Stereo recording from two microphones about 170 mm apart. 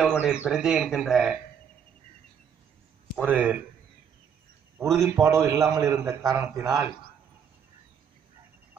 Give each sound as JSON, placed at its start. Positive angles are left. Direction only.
{"t": 0.0, "sound": "speech", "side_deg": -5}
{"t": 3.2, "sound": "a man's voice", "side_deg": -10}
{"t": 4.7, "sound": "a man's voice", "side_deg": -15}